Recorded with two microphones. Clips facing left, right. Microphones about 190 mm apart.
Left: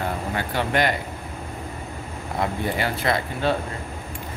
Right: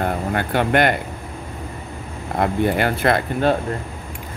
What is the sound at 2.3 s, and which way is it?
Speech, 60° right (ahead or behind).